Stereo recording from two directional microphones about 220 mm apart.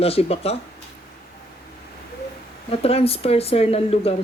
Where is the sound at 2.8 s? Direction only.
25° left (ahead or behind).